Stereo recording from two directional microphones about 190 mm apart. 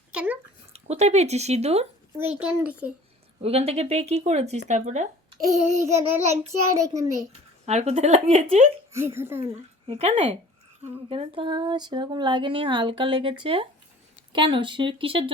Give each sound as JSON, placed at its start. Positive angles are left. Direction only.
{"t": 0.1, "sound": "a sound", "side_deg": -5}
{"t": 0.7, "sound": "a woman's voice", "side_deg": -35}
{"t": 2.4, "sound": "child singing", "side_deg": -5}
{"t": 3.4, "sound": "a woman's voice", "side_deg": -30}
{"t": 5.8, "sound": "child singing", "side_deg": -15}
{"t": 7.6, "sound": "a woman's voice", "side_deg": -35}
{"t": 8.9, "sound": "child singing", "side_deg": -15}
{"t": 9.4, "sound": "speech", "side_deg": -30}